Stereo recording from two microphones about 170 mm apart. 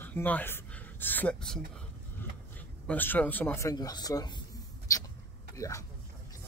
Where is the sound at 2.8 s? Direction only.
10° left (ahead or behind).